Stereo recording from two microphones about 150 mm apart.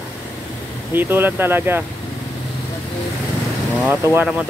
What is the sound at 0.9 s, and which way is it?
Speech, 15° right (ahead or behind).